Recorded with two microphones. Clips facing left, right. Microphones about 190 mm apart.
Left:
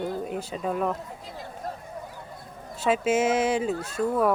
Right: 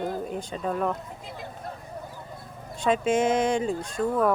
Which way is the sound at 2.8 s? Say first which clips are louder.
Even; 5° left (ahead or behind).